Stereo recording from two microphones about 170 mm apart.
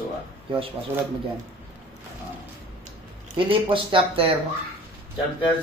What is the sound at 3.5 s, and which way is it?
Speech, 30° right (ahead or behind).